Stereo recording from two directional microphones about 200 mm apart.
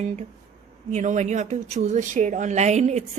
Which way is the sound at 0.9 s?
35° right (ahead or behind).